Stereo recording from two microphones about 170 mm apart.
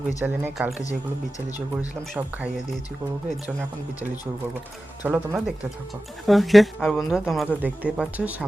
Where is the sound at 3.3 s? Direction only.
Centre (ahead or behind).